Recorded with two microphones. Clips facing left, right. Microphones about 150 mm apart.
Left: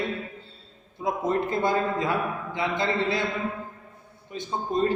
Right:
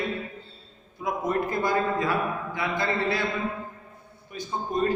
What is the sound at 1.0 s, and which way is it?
A man's voice, 25° left (ahead or behind).